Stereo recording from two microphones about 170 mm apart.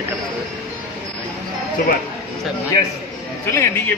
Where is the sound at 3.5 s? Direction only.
15° left (ahead or behind).